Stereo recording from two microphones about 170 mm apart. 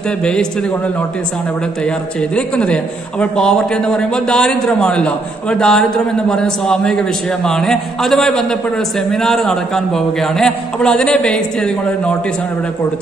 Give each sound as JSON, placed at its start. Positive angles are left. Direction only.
{"t": 0.2, "sound": "a man's voice", "side_deg": 5}
{"t": 2.3, "sound": "a man's voice", "side_deg": 5}